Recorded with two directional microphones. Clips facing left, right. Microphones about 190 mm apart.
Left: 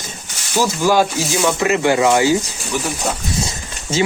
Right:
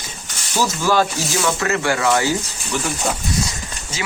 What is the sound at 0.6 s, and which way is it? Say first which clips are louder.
Speech: left 3 dB; 15° left (ahead or behind).